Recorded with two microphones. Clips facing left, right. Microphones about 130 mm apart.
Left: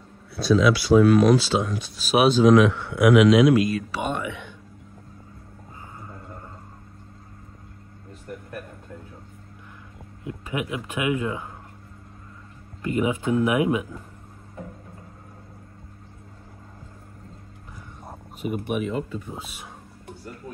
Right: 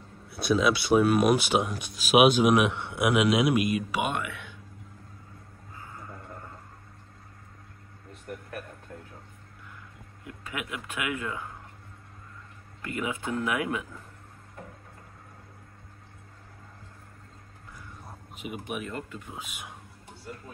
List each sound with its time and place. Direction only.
0.5 s a man's voice: 20° right (ahead or behind)
10.2 s speech: 25° left (ahead or behind)
12.8 s speech: 20° left (ahead or behind)
18.0 s a sound: 45° left (ahead or behind)